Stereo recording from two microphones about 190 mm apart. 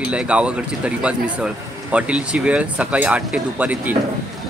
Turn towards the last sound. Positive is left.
turn(degrees=-10)  # may be behind; listen again after turning